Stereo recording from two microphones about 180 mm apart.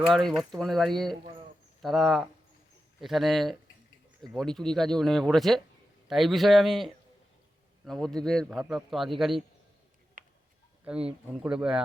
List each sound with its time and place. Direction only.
0.0 s a man's voice: centre (ahead or behind)
10.2 s a sound: 45° right (ahead or behind)
10.8 s a man's voice: 5° right (ahead or behind)